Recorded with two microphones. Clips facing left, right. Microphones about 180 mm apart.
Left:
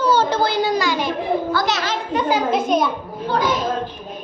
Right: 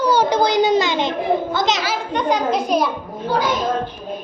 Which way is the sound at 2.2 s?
5° left (ahead or behind).